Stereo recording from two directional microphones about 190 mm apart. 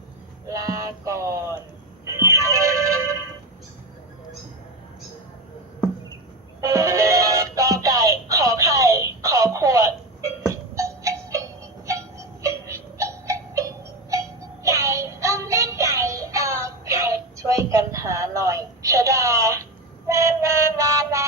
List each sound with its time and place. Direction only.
0.4 s music: 15° right (ahead or behind)
6.6 s music: 15° right (ahead or behind)
20.1 s train: 15° right (ahead or behind)